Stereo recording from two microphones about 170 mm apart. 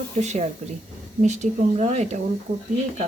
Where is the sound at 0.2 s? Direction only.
40° right (ahead or behind).